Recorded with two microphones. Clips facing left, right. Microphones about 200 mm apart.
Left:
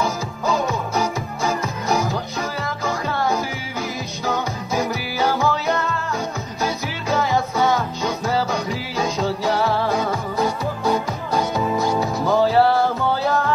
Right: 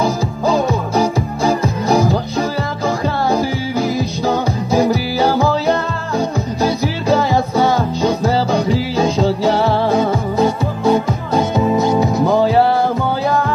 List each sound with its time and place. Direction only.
0.0 s music: 30° right (ahead or behind)